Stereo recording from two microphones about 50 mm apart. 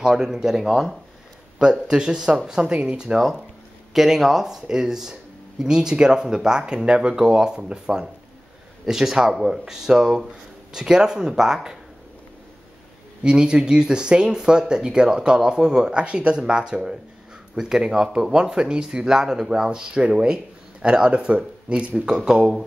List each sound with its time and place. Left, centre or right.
0.0 s speech: centre
3.2 s speech: centre
13.2 s speech: centre